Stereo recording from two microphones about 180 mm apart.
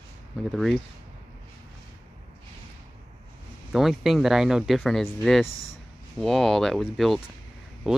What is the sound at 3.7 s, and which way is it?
Speech, centre (ahead or behind).